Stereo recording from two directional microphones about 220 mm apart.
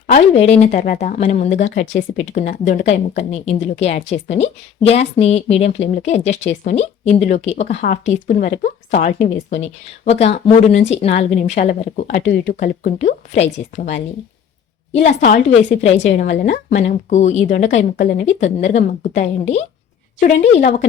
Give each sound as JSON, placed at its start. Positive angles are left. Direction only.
{"t": 0.4, "sound": "a woman's voice", "side_deg": 30}
{"t": 15.0, "sound": "speech", "side_deg": 35}